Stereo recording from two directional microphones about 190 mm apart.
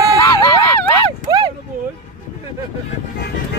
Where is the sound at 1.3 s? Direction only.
20° right (ahead or behind).